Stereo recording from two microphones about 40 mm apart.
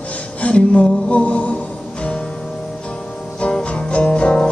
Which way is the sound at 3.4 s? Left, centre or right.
Left.